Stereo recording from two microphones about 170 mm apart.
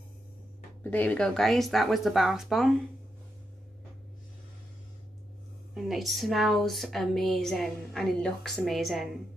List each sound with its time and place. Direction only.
0.8 s a woman's voice: 10° left (ahead or behind)
5.8 s a woman's voice: centre (ahead or behind)